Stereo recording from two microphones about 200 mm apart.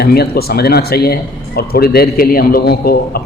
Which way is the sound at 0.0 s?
50° left (ahead or behind).